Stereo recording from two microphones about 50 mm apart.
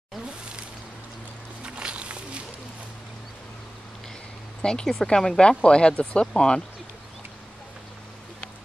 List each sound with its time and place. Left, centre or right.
1.6 s music: right
4.6 s speech: centre